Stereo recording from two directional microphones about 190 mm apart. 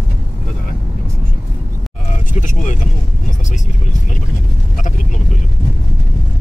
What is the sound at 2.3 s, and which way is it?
Vehicle, 40° left (ahead or behind).